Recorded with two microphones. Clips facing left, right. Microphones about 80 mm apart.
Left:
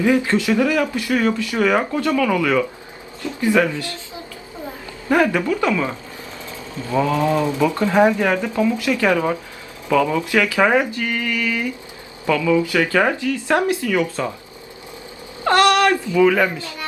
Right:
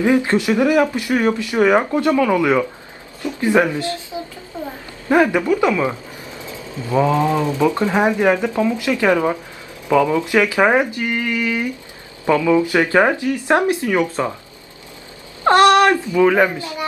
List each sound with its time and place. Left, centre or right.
0.0 s speech: right
6.9 s ratchet: centre
7.6 s speech: centre
15.4 s speech: right